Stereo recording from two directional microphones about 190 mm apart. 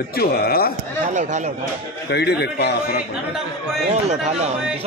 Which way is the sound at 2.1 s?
60° left (ahead or behind).